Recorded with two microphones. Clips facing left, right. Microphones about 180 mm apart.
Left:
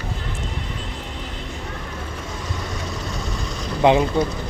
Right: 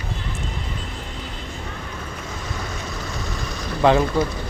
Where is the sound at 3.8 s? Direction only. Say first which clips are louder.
Left 1 dB; 20° left (ahead or behind).